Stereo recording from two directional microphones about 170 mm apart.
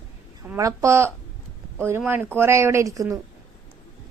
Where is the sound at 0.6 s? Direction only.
20° right (ahead or behind).